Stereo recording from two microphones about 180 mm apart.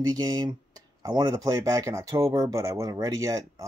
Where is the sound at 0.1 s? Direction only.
20° right (ahead or behind).